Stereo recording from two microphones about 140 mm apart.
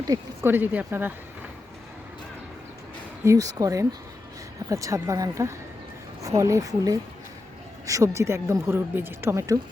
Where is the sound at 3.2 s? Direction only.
25° right (ahead or behind).